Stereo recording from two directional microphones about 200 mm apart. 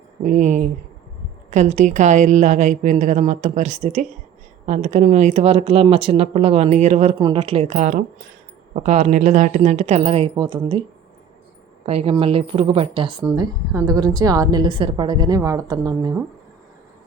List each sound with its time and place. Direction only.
0.2 s a woman's voice: 35° right (ahead or behind)
11.9 s a woman's voice: 30° right (ahead or behind)